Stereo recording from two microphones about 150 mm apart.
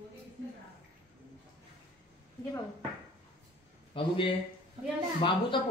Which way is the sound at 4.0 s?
35° left (ahead or behind).